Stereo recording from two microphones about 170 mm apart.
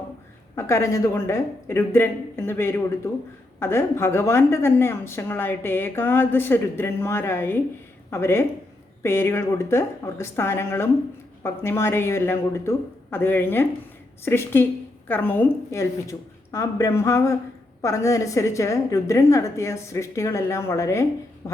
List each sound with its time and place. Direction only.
0.5 s a woman's voice: 15° left (ahead or behind)